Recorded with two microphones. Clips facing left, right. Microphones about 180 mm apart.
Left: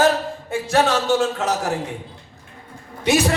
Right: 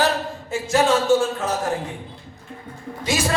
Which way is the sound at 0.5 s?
65° left (ahead or behind).